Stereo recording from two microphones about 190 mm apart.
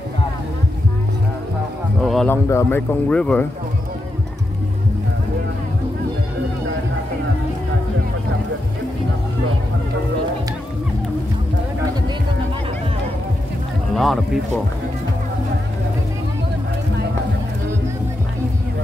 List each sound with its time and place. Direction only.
2.0 s a sound: centre (ahead or behind)
2.3 s speech: 15° left (ahead or behind)
13.9 s speech: centre (ahead or behind)